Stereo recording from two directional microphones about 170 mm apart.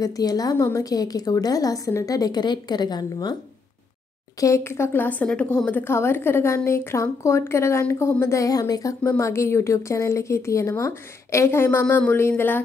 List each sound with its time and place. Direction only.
0.0 s a woman's voice: 20° left (ahead or behind)
4.4 s a woman's voice: 15° left (ahead or behind)